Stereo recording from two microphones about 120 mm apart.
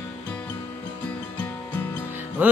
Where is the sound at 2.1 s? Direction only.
15° right (ahead or behind).